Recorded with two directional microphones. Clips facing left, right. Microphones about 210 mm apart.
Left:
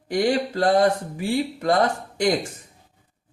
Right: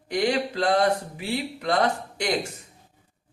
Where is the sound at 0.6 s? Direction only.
45° left (ahead or behind).